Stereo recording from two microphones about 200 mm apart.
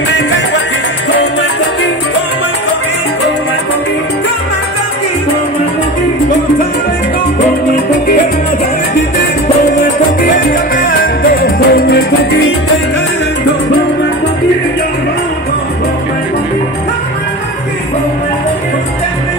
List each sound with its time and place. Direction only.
9.7 s music: 40° left (ahead or behind); by 12.5 s 55° left (ahead or behind)